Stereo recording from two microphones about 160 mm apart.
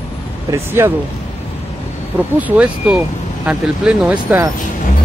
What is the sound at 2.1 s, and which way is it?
Speech, 10° right (ahead or behind).